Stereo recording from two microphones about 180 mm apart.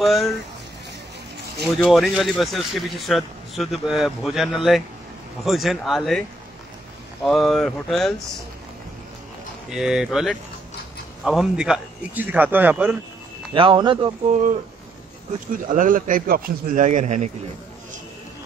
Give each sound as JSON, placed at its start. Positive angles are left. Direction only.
{"t": 0.0, "sound": "speech", "side_deg": 0}
{"t": 1.6, "sound": "speech", "side_deg": 0}
{"t": 7.2, "sound": "speech", "side_deg": 0}
{"t": 9.7, "sound": "speech", "side_deg": -5}
{"t": 13.5, "sound": "speech", "side_deg": -25}
{"t": 14.3, "sound": "a man's voice", "side_deg": -45}